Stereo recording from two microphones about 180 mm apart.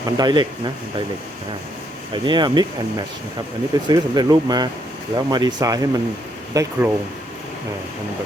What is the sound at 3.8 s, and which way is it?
Speech, 20° right (ahead or behind).